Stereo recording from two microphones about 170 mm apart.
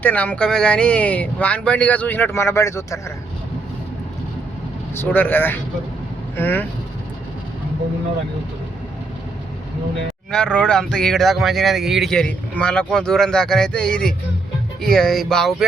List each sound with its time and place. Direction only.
0.0 s speech: 10° left (ahead or behind)
4.9 s speech: 10° left (ahead or behind)
10.3 s speech: 5° left (ahead or behind)